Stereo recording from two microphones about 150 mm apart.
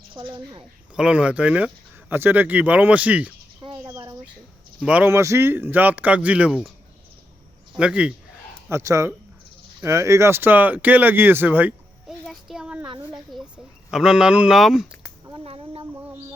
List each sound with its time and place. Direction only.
0.3 s speech: 30° right (ahead or behind)
0.9 s speech: 5° right (ahead or behind)
3.8 s a sound: 20° right (ahead or behind)
4.9 s speech: 10° right (ahead or behind)
7.8 s speech: 5° right (ahead or behind)
8.7 s speech: 20° right (ahead or behind)
12.2 s a sound: centre (ahead or behind)
13.3 s speech: centre (ahead or behind)
15.3 s a sound: 40° right (ahead or behind)